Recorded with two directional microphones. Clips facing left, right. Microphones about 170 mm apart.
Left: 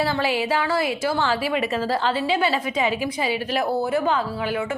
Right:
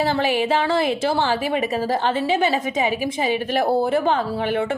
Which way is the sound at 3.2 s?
50° right (ahead or behind).